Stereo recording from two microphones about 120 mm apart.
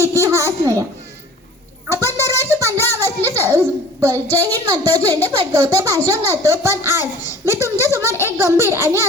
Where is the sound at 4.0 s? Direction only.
25° right (ahead or behind).